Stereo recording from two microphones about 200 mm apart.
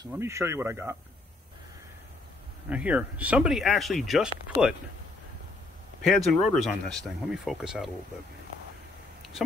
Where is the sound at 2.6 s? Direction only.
5° right (ahead or behind).